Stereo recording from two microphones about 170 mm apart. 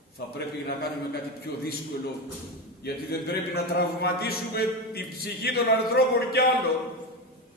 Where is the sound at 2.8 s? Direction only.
70° left (ahead or behind).